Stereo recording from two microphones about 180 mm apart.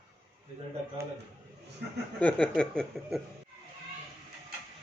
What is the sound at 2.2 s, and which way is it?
A man's voice, 10° left (ahead or behind).